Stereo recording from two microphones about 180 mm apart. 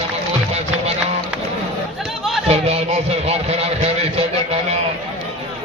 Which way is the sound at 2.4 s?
35° right (ahead or behind).